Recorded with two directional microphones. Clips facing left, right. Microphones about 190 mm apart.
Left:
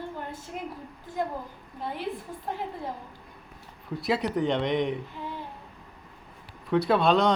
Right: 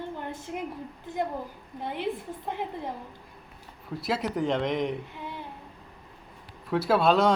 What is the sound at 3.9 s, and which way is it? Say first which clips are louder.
Speech: left 2 dB; centre (ahead or behind).